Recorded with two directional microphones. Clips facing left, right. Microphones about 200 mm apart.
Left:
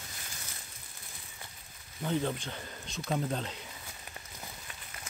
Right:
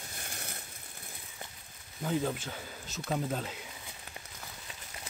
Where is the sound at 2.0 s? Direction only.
5° right (ahead or behind).